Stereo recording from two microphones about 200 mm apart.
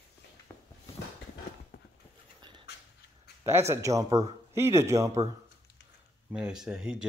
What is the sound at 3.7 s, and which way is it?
Speech, 15° right (ahead or behind).